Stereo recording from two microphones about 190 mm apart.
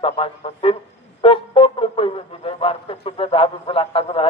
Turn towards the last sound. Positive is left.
turn(degrees=30)  # may be behind; listen again after turning